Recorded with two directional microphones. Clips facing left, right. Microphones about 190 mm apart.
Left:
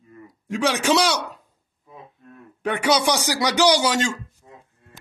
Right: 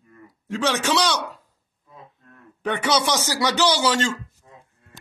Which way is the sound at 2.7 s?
10° left (ahead or behind).